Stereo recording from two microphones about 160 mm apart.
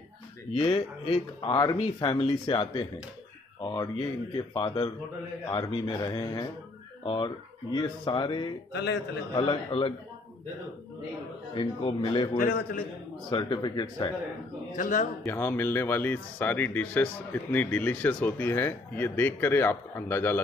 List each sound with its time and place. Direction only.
0.6 s speech: 35° left (ahead or behind)
11.5 s speech: 30° left (ahead or behind)
12.4 s a man's voice: 65° left (ahead or behind)
13.3 s speech: 30° left (ahead or behind)
14.8 s a man's voice: 50° left (ahead or behind)
15.2 s speech: 15° left (ahead or behind)